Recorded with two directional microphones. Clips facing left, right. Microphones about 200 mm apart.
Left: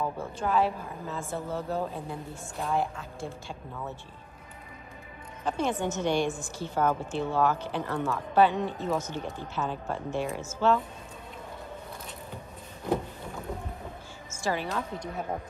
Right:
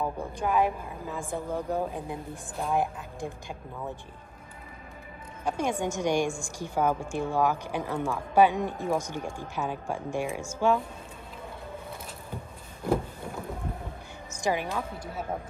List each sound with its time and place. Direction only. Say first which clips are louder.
0.0 s a woman's voice: right 1 dB; 15° right (ahead or behind)
5.4 s a woman's voice: even; 10° right (ahead or behind)
14.3 s a woman's voice: right 2 dB; 15° right (ahead or behind)